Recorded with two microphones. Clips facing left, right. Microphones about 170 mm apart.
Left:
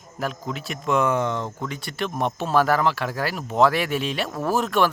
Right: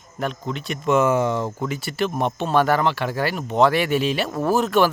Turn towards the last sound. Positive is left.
turn(degrees=0)  # may be behind; listen again after turning